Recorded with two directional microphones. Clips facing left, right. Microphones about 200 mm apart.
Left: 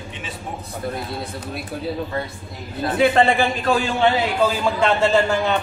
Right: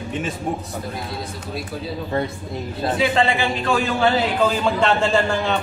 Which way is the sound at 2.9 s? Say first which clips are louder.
Left 4 dB; 50° left (ahead or behind).